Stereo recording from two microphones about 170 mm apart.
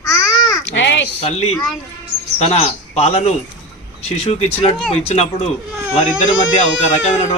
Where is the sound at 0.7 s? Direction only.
90° left.